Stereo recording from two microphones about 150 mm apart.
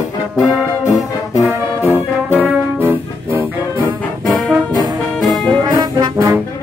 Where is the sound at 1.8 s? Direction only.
20° left (ahead or behind).